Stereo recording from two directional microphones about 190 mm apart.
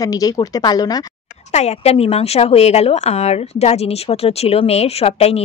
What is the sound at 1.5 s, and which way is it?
Speech, 35° left (ahead or behind).